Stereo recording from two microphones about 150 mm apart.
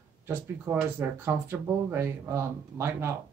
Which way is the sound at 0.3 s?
15° right (ahead or behind).